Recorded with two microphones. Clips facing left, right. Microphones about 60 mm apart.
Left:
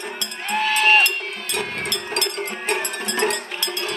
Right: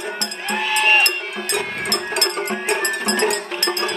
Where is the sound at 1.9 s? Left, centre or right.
Right.